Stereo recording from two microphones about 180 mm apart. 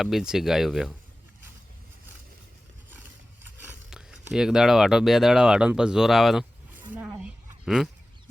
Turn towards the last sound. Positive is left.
turn(degrees=-5)  # may be behind; listen again after turning